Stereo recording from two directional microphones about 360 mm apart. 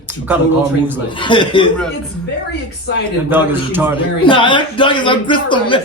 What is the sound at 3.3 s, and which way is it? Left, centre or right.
Speech, centre.